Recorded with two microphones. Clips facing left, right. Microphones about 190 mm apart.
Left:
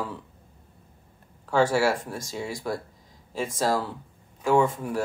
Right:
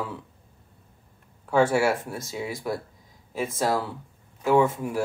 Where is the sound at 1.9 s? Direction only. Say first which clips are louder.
Right 1 dB; 5° right (ahead or behind).